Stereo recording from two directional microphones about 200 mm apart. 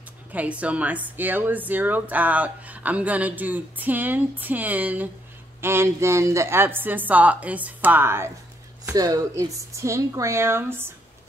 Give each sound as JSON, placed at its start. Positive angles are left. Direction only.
{"t": 0.3, "sound": "speech", "side_deg": -5}